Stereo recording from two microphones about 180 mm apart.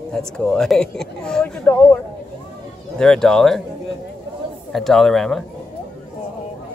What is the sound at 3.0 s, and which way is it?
Speech, 5° left (ahead or behind).